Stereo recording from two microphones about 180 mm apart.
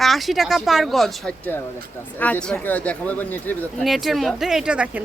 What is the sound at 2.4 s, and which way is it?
Speech, 10° left (ahead or behind).